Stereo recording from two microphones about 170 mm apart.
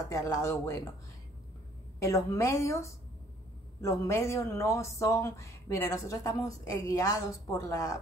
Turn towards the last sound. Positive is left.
turn(degrees=20)  # may be behind; listen again after turning